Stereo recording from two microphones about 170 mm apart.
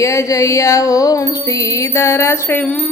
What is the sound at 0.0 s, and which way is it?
Music, 20° left (ahead or behind).